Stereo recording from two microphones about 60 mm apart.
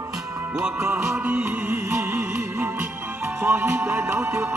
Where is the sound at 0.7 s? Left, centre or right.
Right.